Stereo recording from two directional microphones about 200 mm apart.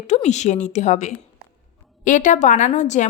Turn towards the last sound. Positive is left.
turn(degrees=35)  # may be behind; listen again after turning